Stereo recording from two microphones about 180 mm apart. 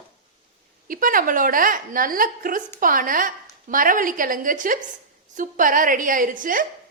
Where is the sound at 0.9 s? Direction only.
50° right (ahead or behind).